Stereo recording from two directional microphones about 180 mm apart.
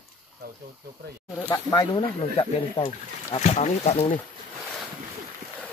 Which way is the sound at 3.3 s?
40° left (ahead or behind).